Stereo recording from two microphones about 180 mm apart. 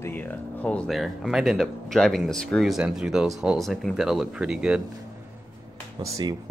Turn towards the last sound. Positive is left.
turn(degrees=-20)  # may be behind; listen again after turning